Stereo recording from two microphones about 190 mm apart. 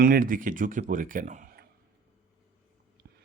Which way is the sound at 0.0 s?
50° right (ahead or behind).